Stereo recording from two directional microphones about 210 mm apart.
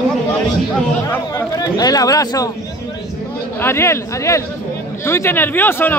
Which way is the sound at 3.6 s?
10° left (ahead or behind).